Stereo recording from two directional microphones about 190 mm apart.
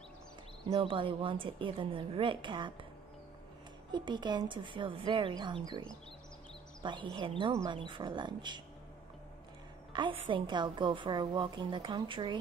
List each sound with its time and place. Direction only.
0.7 s a woman's voice: 30° right (ahead or behind)
3.9 s a woman's voice: 25° right (ahead or behind)
9.9 s a woman's voice: 25° right (ahead or behind)